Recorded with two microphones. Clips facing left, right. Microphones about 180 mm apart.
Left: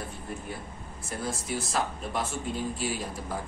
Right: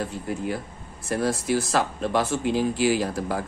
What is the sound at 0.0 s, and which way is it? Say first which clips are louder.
Speech: right 9 dB; 85° right.